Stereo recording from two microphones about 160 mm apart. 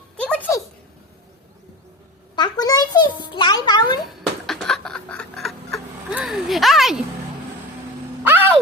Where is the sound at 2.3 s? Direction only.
25° left (ahead or behind).